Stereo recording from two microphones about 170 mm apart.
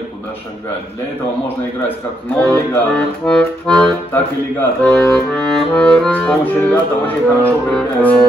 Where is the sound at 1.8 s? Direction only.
10° left (ahead or behind).